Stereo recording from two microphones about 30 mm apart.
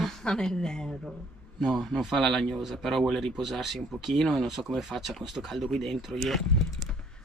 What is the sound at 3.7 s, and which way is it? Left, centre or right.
Speech, centre.